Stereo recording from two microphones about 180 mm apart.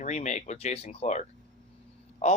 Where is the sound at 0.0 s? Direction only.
40° left (ahead or behind).